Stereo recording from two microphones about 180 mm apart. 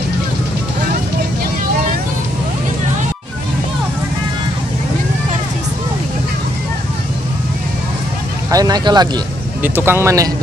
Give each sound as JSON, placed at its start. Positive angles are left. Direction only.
{"t": 8.5, "sound": "speech", "side_deg": -20}
{"t": 9.6, "sound": "speech", "side_deg": -10}